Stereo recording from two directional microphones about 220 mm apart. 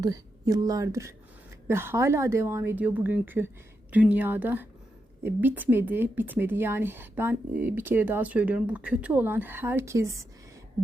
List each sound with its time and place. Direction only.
0.0 s a woman's voice: 15° right (ahead or behind)